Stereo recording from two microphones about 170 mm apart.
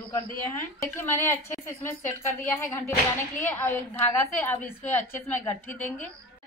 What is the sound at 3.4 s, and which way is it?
A woman's voice, 10° left (ahead or behind).